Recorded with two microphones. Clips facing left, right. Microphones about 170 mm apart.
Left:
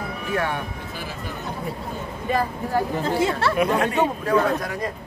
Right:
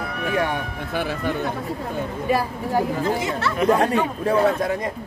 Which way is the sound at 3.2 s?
30° left (ahead or behind).